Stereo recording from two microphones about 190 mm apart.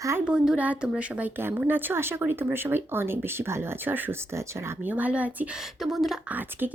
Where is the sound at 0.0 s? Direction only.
15° right (ahead or behind).